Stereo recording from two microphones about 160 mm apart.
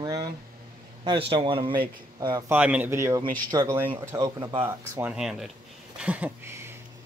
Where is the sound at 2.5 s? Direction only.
10° right (ahead or behind); by 4.5 s 25° right (ahead or behind).